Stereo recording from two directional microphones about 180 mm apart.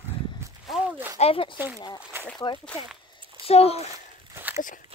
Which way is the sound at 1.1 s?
35° left (ahead or behind).